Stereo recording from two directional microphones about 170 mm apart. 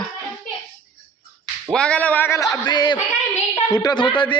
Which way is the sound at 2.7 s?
25° left (ahead or behind).